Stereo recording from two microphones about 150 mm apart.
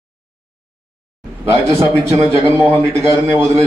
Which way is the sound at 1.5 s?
15° right (ahead or behind).